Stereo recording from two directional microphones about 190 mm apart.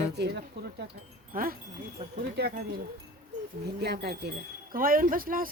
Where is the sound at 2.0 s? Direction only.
35° right (ahead or behind).